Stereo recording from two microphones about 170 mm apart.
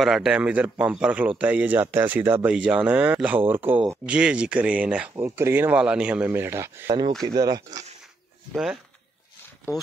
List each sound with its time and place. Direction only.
0.0 s speech: centre (ahead or behind); by 7.8 s 20° right (ahead or behind)
9.7 s speech: 15° left (ahead or behind)